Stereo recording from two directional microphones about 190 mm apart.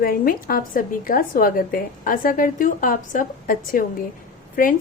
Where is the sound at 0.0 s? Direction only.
50° left (ahead or behind).